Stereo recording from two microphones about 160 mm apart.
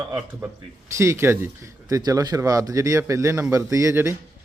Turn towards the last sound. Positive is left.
turn(degrees=-15)  # may be behind; listen again after turning